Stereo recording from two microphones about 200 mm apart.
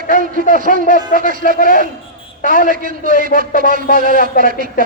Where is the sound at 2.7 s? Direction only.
45° right (ahead or behind).